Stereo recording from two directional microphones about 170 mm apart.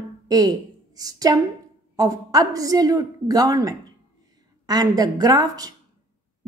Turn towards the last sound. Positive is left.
turn(degrees=-20)  # may be behind; listen again after turning